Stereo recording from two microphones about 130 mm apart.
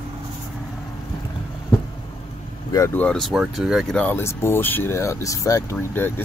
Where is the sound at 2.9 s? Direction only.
10° left (ahead or behind).